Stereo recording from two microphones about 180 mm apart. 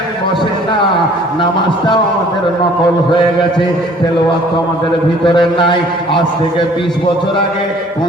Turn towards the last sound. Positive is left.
turn(degrees=25)  # may be behind; listen again after turning